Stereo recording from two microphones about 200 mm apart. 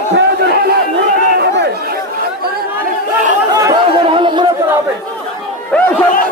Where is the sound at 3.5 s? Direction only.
15° right (ahead or behind).